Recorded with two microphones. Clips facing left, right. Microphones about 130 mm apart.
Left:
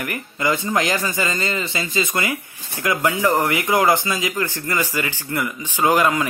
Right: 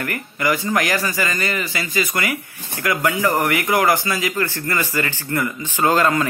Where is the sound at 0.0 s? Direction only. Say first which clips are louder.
Right 1 dB; 20° left (ahead or behind).